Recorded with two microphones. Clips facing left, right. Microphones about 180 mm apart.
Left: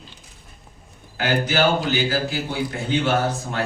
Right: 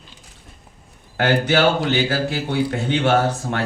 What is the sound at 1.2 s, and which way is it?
A man's voice, 65° right (ahead or behind).